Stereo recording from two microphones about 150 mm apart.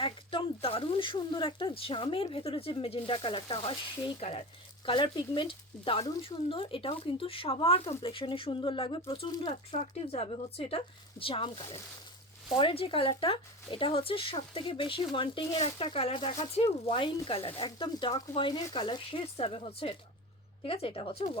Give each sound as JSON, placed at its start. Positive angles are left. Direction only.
{"t": 0.0, "sound": "speech", "side_deg": 35}